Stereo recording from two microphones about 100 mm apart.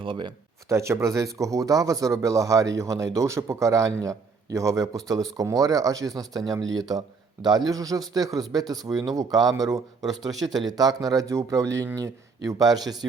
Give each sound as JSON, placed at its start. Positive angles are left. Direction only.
{"t": 0.0, "sound": "speech", "side_deg": -55}
{"t": 0.7, "sound": "speech", "side_deg": -30}